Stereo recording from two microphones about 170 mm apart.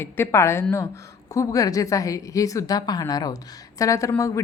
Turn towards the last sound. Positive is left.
turn(degrees=20)  # may be behind; listen again after turning